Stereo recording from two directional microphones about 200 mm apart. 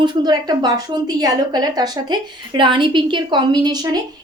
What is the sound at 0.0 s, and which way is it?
A woman's voice, 20° right (ahead or behind).